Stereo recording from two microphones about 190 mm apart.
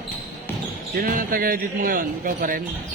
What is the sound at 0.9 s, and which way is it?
A man's voice, 50° right (ahead or behind).